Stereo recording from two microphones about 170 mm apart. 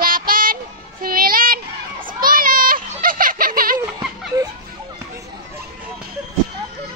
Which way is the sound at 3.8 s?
20° right (ahead or behind).